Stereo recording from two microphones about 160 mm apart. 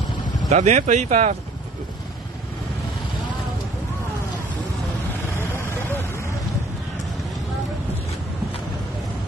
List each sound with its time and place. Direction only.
0.5 s speech: 45° right (ahead or behind)
5.6 s vehicle: 15° left (ahead or behind)